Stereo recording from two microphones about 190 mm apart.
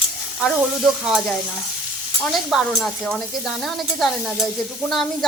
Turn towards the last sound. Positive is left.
turn(degrees=0)  # may be behind; listen again after turning